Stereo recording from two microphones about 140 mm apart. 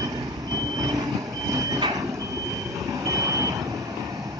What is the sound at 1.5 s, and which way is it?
Reversing beeps, 25° right (ahead or behind).